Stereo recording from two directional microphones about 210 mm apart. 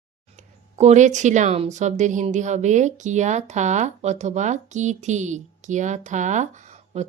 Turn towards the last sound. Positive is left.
turn(degrees=-30)  # may be behind; listen again after turning